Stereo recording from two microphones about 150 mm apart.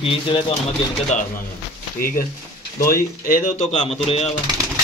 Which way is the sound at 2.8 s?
70° left (ahead or behind).